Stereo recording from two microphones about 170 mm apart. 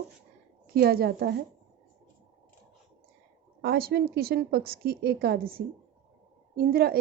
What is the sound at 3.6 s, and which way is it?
A woman's voice, 65° right (ahead or behind).